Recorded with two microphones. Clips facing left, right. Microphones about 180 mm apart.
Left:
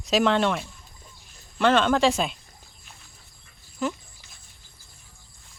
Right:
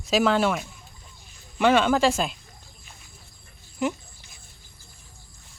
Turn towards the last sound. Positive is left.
turn(degrees=-15)  # may be behind; listen again after turning